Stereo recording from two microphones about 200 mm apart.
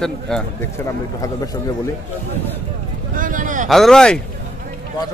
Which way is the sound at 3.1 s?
40° right (ahead or behind).